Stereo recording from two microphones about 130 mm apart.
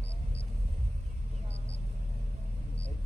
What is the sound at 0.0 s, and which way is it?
Vehicle, 60° right (ahead or behind).